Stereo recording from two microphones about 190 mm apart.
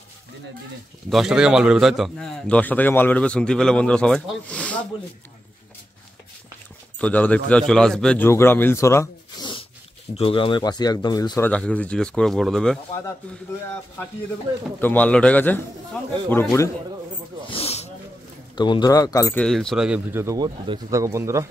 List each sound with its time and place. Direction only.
1.1 s a man's voice: 5° right (ahead or behind)
7.0 s a man's voice: 5° left (ahead or behind)
14.8 s speech: 10° left (ahead or behind)
17.5 s roaring cats: 30° left (ahead or behind)
18.6 s speech: 20° left (ahead or behind)
19.4 s speech: centre (ahead or behind); by 21.5 s 15° right (ahead or behind)